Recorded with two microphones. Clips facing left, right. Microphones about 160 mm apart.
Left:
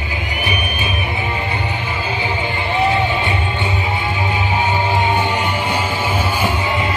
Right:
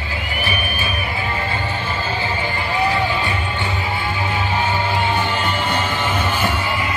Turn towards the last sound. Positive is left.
turn(degrees=20)  # may be behind; listen again after turning